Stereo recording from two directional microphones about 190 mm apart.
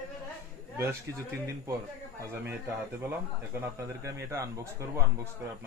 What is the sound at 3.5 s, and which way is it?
Speech, 15° right (ahead or behind).